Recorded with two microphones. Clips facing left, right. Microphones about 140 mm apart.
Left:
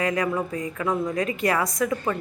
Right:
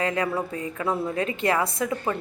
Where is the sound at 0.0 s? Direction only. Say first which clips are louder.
Left 1 dB; 30° right (ahead or behind).